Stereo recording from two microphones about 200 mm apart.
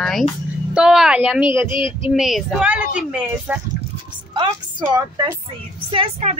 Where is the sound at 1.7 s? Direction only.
25° left (ahead or behind).